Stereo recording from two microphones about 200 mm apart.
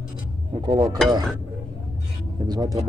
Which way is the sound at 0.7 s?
20° right (ahead or behind).